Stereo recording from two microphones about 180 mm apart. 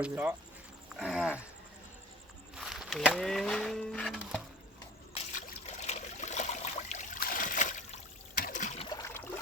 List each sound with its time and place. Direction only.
0.0 s speech: 10° right (ahead or behind)
0.9 s a sound: 5° right (ahead or behind)
2.6 s speech: centre (ahead or behind)
5.1 s trickle: 45° left (ahead or behind)
9.0 s trickle: 15° left (ahead or behind)